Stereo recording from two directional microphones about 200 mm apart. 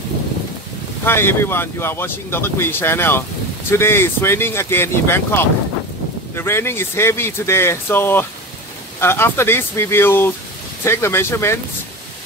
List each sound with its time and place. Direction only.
1.0 s speech: 10° left (ahead or behind)